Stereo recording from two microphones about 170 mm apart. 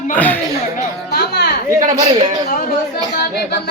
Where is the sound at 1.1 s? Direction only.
65° left (ahead or behind).